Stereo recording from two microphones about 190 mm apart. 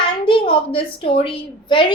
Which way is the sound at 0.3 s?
30° left (ahead or behind).